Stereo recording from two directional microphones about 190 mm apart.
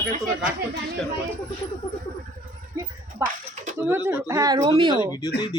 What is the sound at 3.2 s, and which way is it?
Speech, 15° right (ahead or behind).